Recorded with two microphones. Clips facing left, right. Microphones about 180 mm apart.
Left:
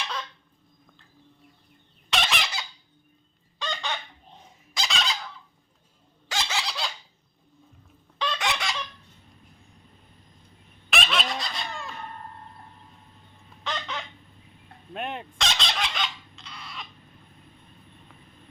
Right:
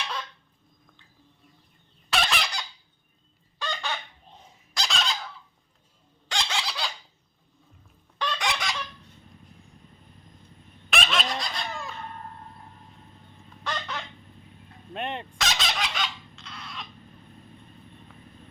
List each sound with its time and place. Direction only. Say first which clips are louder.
2.0 s fowl: right 1 dB; centre (ahead or behind)
6.2 s a sound: even; 5° left (ahead or behind)
8.2 s chicken: left 1 dB; centre (ahead or behind)
10.8 s fowl: even; centre (ahead or behind)
13.7 s chicken: even; 5° right (ahead or behind)
14.9 s fowl: right 1 dB; centre (ahead or behind)